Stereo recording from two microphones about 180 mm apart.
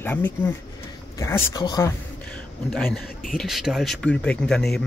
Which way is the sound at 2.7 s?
Centre (ahead or behind).